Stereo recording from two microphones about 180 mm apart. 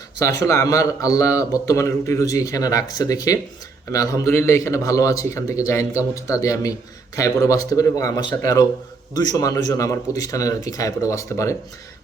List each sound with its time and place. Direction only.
0.4 s a man's voice: 15° left (ahead or behind)